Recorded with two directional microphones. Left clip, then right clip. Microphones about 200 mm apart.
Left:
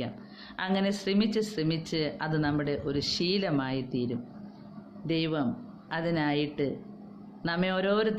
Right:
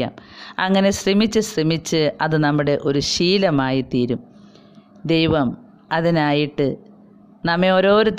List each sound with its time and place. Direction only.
0.0 s a man's voice: 50° right (ahead or behind)